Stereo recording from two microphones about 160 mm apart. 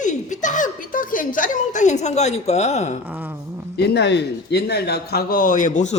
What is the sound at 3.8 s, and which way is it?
Speech, 90° left.